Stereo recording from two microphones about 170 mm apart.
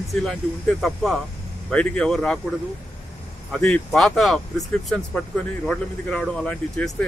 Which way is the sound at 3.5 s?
5° left (ahead or behind).